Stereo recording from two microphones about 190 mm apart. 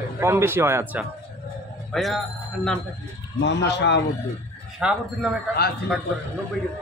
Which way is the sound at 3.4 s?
65° left (ahead or behind).